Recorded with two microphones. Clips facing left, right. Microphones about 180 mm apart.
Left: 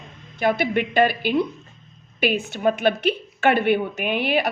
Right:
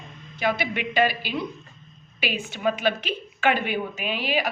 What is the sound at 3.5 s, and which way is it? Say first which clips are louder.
Speech: left 7 dB; 60° left (ahead or behind).